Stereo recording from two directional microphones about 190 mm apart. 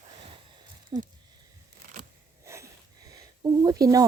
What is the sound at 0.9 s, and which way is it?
Speech, 25° right (ahead or behind).